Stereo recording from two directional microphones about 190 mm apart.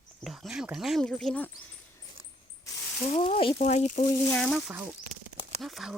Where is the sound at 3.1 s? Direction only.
30° left (ahead or behind).